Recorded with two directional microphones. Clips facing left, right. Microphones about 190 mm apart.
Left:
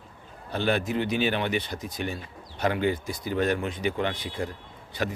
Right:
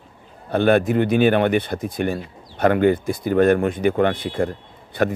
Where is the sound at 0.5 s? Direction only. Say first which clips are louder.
Right 10 dB; 55° right (ahead or behind).